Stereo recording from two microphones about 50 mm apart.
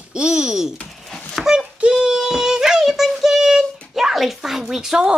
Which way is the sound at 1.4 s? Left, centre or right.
Centre.